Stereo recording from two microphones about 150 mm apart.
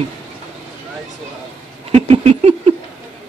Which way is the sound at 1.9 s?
40° right (ahead or behind).